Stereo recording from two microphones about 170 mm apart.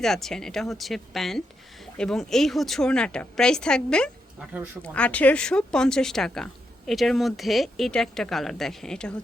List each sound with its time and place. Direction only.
0.0 s speech: centre (ahead or behind)
4.4 s speech: 10° right (ahead or behind)
4.8 s speech: 5° left (ahead or behind)